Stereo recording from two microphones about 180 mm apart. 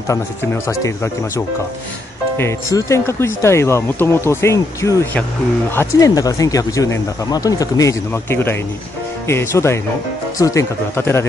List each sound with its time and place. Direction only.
0.7 s speech: 15° left (ahead or behind)